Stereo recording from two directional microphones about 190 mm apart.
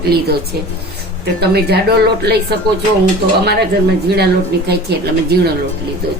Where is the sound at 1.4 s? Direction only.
60° right (ahead or behind).